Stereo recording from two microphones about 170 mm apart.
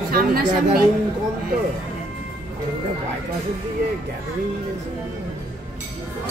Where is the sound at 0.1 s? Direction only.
60° right (ahead or behind).